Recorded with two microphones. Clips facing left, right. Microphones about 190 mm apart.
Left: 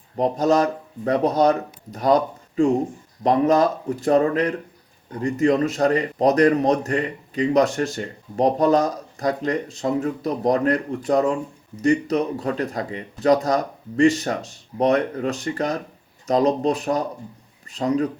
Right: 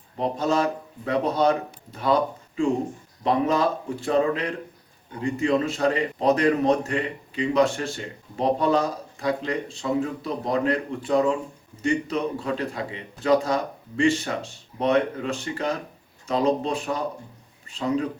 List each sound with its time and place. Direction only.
0.2 s a man's voice: 40° left (ahead or behind)